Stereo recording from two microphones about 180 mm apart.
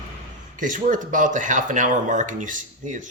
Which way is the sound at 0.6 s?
45° right (ahead or behind).